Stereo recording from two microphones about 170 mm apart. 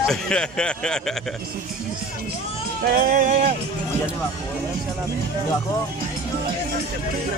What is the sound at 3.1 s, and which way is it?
Speech, 50° right (ahead or behind).